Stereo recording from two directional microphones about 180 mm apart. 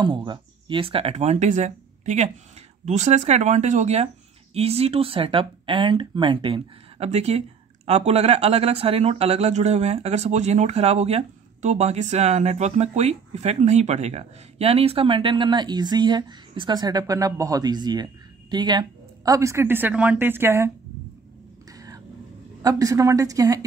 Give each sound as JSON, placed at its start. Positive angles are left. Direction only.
{"t": 0.0, "sound": "speech", "side_deg": -25}
{"t": 21.7, "sound": "vehicle", "side_deg": -20}
{"t": 22.6, "sound": "a woman's voice", "side_deg": -20}